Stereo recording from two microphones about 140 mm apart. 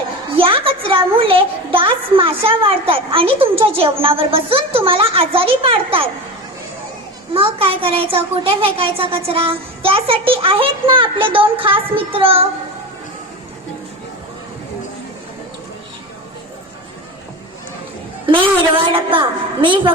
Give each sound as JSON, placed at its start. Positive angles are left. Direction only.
{"t": 0.3, "sound": "a woman's voice", "side_deg": -40}
{"t": 7.3, "sound": "a woman's voice", "side_deg": -40}
{"t": 18.3, "sound": "a woman's voice", "side_deg": -35}